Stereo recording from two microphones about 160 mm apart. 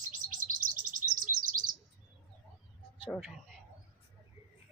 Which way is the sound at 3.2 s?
5° right (ahead or behind).